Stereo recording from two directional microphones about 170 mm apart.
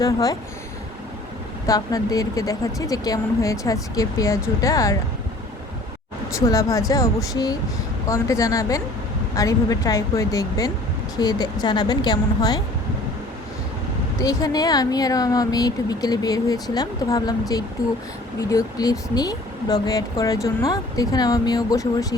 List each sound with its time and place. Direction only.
0.0 s speech: 20° left (ahead or behind)
1.6 s speech: 20° left (ahead or behind)
6.4 s speech: 20° left (ahead or behind)
14.2 s speech: 20° left (ahead or behind)